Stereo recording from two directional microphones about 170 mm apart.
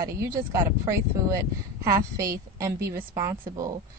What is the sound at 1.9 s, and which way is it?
Speech, 20° right (ahead or behind).